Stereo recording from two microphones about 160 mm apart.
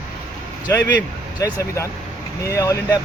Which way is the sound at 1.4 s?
20° left (ahead or behind).